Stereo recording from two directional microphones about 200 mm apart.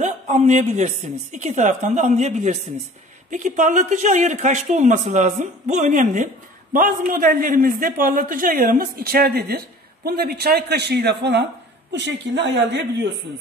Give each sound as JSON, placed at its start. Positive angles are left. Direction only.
{"t": 0.0, "sound": "a man's voice", "side_deg": -35}